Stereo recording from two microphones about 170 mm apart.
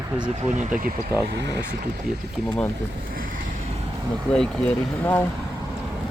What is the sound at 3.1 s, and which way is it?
Vehicle, 55° right (ahead or behind).